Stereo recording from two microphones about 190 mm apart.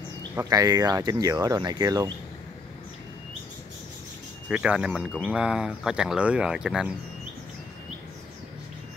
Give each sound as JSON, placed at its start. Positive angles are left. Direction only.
{"t": 0.4, "sound": "speech", "side_deg": -20}
{"t": 4.5, "sound": "speech", "side_deg": -5}